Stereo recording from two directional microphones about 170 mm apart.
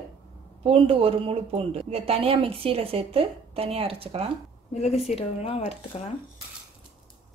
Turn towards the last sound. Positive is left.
turn(degrees=35)  # may be behind; listen again after turning